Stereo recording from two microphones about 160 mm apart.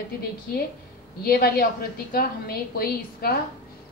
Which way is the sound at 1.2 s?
70° left (ahead or behind).